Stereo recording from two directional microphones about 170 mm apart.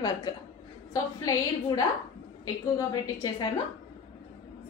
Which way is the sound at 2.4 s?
25° left (ahead or behind).